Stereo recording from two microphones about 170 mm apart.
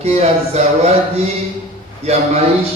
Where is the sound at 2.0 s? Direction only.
35° right (ahead or behind).